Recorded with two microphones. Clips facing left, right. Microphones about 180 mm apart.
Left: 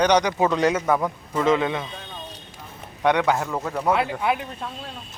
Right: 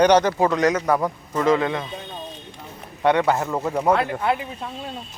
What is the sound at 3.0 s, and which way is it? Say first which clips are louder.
Speech: right 2 dB; 5° right (ahead or behind).